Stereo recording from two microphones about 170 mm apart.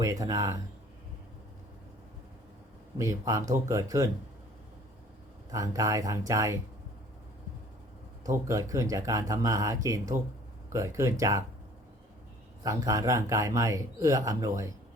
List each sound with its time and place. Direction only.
0.0 s speech: 20° right (ahead or behind)
3.0 s speech: 20° right (ahead or behind)
5.5 s speech: 20° right (ahead or behind)
8.2 s speech: 20° right (ahead or behind)
12.6 s speech: 20° right (ahead or behind)